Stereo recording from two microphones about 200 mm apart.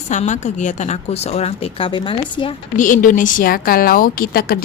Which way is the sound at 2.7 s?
40° left (ahead or behind).